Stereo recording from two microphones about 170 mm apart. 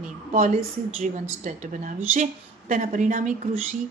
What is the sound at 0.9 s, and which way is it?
Speech, 45° right (ahead or behind).